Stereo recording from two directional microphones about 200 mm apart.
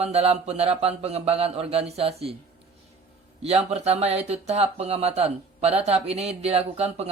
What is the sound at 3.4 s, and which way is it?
Speech, 30° right (ahead or behind).